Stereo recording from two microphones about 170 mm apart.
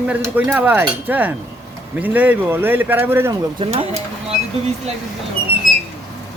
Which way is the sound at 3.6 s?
30° right (ahead or behind).